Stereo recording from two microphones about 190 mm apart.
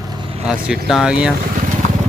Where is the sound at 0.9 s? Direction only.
5° right (ahead or behind).